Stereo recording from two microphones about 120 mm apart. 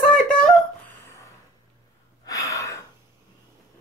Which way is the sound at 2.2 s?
30° left (ahead or behind).